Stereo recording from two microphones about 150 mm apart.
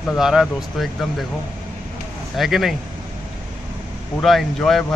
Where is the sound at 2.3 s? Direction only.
Centre (ahead or behind).